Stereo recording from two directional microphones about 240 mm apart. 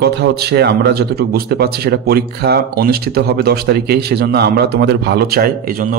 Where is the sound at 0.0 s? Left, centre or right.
Right.